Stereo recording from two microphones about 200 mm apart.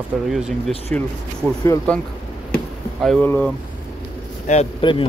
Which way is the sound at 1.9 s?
5° left (ahead or behind).